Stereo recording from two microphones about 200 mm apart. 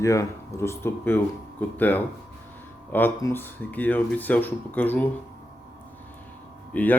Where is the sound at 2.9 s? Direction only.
15° left (ahead or behind).